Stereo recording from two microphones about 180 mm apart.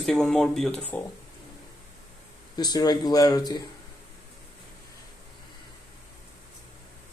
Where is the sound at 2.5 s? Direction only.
20° left (ahead or behind).